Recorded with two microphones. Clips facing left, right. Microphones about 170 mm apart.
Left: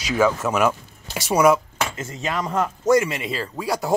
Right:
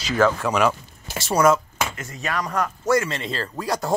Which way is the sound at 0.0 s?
5° left (ahead or behind).